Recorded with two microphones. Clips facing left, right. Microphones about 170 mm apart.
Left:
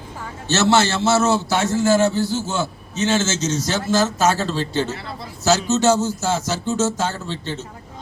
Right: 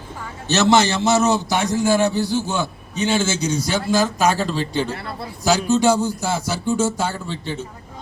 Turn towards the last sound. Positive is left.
turn(degrees=-10)  # may be behind; listen again after turning